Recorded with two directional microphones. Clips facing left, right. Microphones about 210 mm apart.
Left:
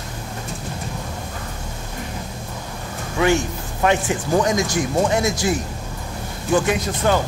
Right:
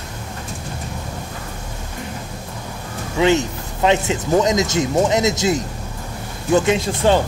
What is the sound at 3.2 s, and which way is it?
A man's voice, 20° right (ahead or behind).